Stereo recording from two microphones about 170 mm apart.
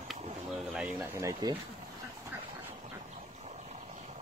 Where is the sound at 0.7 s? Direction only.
10° right (ahead or behind).